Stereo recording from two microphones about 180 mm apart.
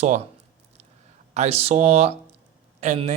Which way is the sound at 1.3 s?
35° right (ahead or behind).